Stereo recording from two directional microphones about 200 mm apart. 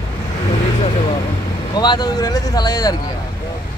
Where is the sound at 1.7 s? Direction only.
20° left (ahead or behind).